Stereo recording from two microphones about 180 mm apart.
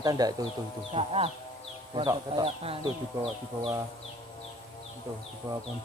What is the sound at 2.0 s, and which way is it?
Speech, 20° right (ahead or behind).